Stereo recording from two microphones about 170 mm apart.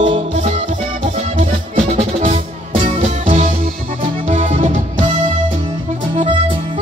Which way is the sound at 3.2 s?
45° right (ahead or behind).